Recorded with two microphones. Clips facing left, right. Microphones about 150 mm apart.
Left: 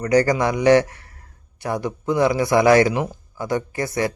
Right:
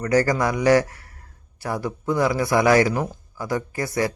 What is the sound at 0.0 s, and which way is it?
Speech, 20° left (ahead or behind).